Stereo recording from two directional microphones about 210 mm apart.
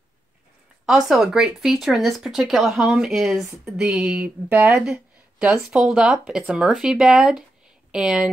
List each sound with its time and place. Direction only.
0.8 s speech: centre (ahead or behind)